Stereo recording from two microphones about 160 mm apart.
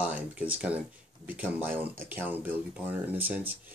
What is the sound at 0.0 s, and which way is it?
Speech, 10° right (ahead or behind).